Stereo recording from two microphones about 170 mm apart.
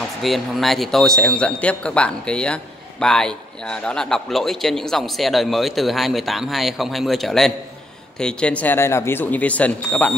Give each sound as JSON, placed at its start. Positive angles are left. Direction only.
{"t": 0.2, "sound": "speech", "side_deg": 0}